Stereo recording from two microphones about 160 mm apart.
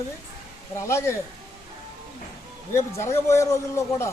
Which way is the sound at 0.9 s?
15° left (ahead or behind).